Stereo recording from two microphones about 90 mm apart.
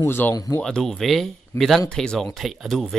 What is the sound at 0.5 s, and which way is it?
Speech, 5° left (ahead or behind).